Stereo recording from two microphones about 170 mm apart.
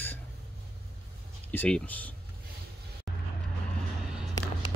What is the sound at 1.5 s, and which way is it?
Speech, 10° left (ahead or behind).